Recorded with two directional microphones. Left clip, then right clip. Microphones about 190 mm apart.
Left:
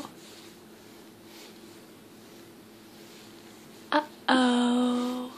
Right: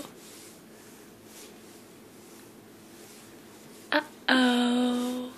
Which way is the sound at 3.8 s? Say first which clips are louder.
Even; 20° left (ahead or behind).